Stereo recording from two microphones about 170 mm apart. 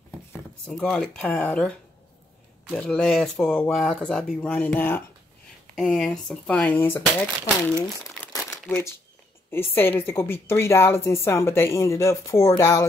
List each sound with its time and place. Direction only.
0.7 s a woman's voice: centre (ahead or behind)
5.8 s speech: centre (ahead or behind)
8.6 s a woman's voice: 15° left (ahead or behind)